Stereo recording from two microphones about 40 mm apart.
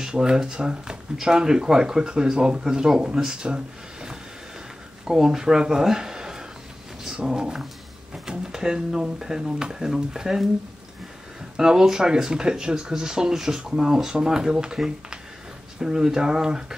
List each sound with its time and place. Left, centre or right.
0.1 s speech: centre
3.4 s a sound: centre
5.0 s speech: centre
11.5 s speech: centre
15.8 s speech: centre